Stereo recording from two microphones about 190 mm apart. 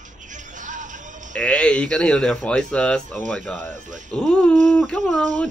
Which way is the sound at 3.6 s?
40° right (ahead or behind).